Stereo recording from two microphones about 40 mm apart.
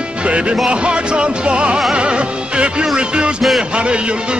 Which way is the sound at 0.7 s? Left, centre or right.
Right.